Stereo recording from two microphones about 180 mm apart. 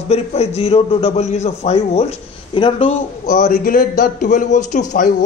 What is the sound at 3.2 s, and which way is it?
Speech, 50° left (ahead or behind).